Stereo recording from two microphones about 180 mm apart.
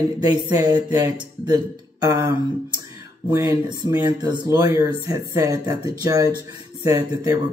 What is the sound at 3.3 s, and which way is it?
Speech, 20° right (ahead or behind).